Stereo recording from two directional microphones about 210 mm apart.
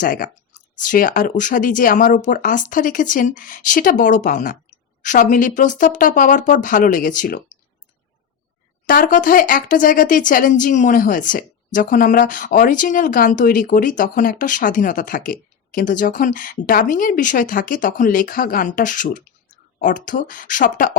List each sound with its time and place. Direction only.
0.0 s speech: 40° left (ahead or behind)
8.9 s speech: 40° left (ahead or behind)